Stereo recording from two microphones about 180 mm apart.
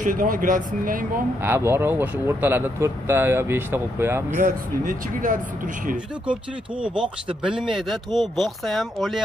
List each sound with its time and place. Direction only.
0.0 s speech: 45° right (ahead or behind)
1.4 s speech: 10° right (ahead or behind)
4.3 s speech: 45° right (ahead or behind)
6.8 s speech: 5° right (ahead or behind)